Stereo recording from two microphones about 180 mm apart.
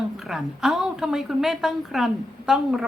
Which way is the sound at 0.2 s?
Centre (ahead or behind).